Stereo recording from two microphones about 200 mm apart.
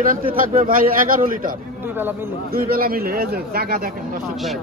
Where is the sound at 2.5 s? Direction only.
45° right (ahead or behind).